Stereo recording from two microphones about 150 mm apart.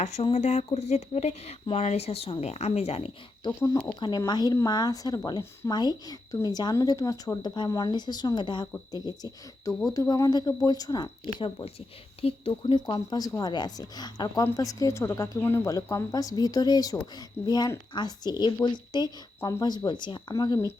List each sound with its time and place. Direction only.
0.0 s speech: 50° left (ahead or behind)
4.3 s speech: 25° left (ahead or behind)